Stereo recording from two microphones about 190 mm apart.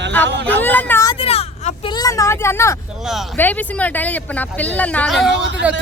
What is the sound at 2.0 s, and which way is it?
Speech, 15° left (ahead or behind).